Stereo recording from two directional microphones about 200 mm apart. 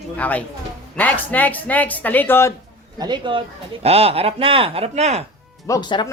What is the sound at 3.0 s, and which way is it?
Speech, 25° right (ahead or behind).